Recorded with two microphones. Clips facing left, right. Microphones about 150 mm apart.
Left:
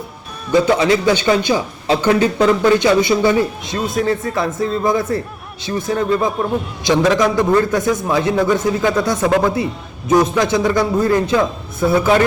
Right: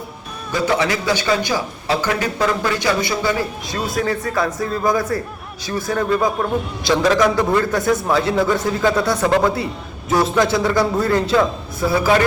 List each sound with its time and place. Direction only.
0.5 s speech: 25° left (ahead or behind)